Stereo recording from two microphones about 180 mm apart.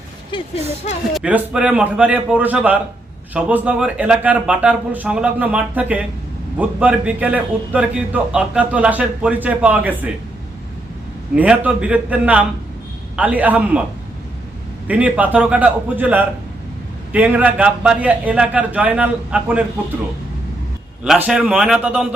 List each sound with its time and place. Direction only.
0.3 s speech: 25° left (ahead or behind)
1.1 s a man's voice: 5° right (ahead or behind)
11.3 s a man's voice: 5° right (ahead or behind)
14.8 s a man's voice: 10° right (ahead or behind)
21.0 s a man's voice: 5° right (ahead or behind)